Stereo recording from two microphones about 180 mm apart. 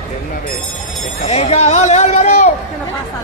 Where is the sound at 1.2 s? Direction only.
40° left (ahead or behind).